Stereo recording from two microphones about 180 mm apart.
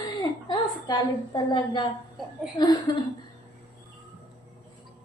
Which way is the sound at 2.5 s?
25° left (ahead or behind).